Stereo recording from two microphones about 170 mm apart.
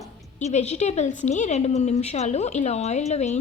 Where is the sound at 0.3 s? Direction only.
40° left (ahead or behind).